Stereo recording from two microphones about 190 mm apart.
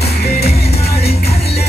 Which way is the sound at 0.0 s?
60° left (ahead or behind).